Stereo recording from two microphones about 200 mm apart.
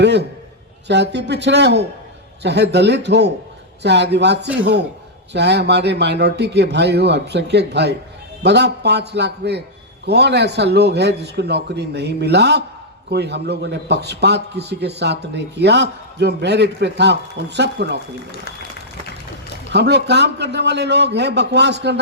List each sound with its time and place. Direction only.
0.0 s a man's voice: 60° right (ahead or behind)
19.7 s a man's voice: 55° right (ahead or behind)